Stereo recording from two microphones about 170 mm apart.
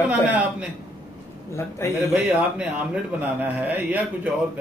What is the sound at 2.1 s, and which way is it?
A man's voice, 5° right (ahead or behind).